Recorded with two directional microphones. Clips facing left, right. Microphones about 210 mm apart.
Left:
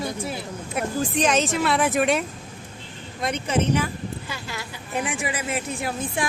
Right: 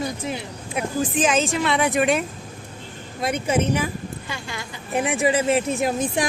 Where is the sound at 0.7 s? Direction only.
Centre (ahead or behind).